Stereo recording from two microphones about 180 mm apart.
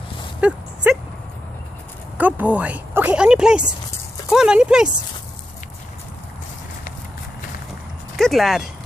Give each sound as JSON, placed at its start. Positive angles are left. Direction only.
{"t": 0.4, "sound": "dog", "side_deg": -5}
{"t": 2.1, "sound": "speech", "side_deg": -10}
{"t": 8.2, "sound": "speech", "side_deg": 0}